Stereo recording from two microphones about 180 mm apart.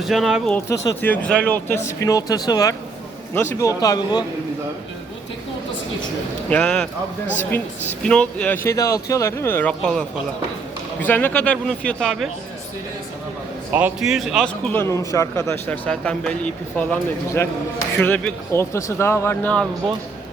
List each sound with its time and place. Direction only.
0.0 s speech: centre (ahead or behind)
0.9 s a man's voice: 10° left (ahead or behind)
6.5 s speech: 5° left (ahead or behind)
8.0 s speech: 5° left (ahead or behind)
8.6 s a man's voice: 15° left (ahead or behind); by 12.3 s centre (ahead or behind)
13.7 s a man's voice: 5° right (ahead or behind)